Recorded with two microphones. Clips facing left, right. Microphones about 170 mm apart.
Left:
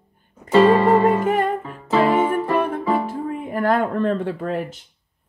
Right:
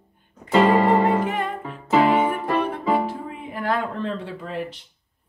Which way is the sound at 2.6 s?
50° left (ahead or behind).